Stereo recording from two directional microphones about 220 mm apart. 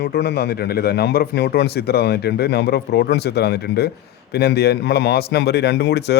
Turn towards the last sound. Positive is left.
turn(degrees=50)  # may be behind; listen again after turning